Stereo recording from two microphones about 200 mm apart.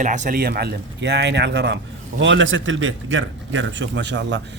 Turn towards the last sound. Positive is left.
turn(degrees=-60)  # may be behind; listen again after turning